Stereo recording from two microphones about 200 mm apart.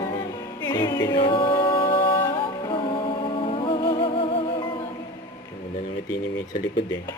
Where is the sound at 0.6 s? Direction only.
20° left (ahead or behind).